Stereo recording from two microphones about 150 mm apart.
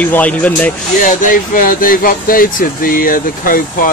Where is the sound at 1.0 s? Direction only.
65° left (ahead or behind).